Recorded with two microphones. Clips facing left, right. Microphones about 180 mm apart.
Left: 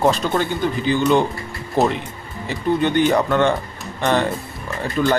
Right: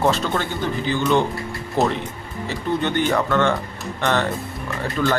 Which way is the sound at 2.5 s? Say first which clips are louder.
Left 4 dB; 15° left (ahead or behind).